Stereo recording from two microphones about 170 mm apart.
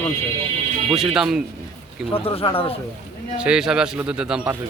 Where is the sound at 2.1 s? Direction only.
35° left (ahead or behind).